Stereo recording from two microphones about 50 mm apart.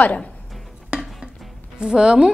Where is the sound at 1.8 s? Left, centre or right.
Centre.